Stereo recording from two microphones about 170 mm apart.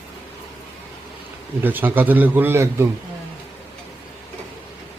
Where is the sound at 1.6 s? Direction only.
10° right (ahead or behind).